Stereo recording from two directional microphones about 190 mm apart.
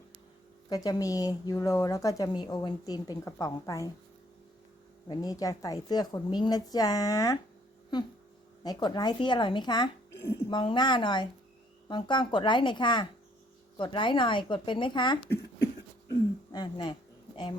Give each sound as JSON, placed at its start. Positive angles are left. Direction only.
{"t": 0.7, "sound": "a woman's voice", "side_deg": 20}
{"t": 5.0, "sound": "a woman's voice", "side_deg": 20}
{"t": 8.6, "sound": "a woman's voice", "side_deg": 20}
{"t": 16.5, "sound": "a sound", "side_deg": 25}